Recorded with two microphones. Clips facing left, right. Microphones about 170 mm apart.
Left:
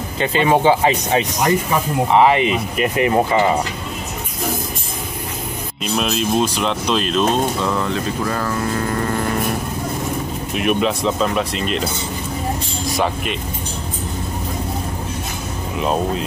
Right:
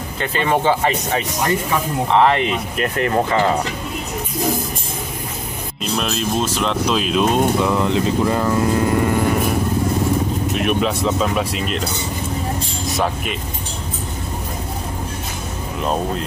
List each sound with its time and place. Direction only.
0.2 s speech: 15° left (ahead or behind)
2.1 s speech: 5° left (ahead or behind)
5.9 s speech: centre (ahead or behind)
10.5 s speech: centre (ahead or behind)
12.9 s speech: centre (ahead or behind)
15.8 s speech: centre (ahead or behind)